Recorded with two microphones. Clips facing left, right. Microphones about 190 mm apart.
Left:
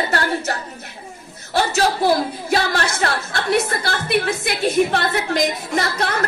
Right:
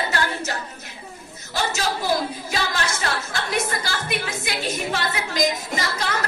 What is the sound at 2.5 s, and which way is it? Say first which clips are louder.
Speech: left 7 dB; 60° left (ahead or behind).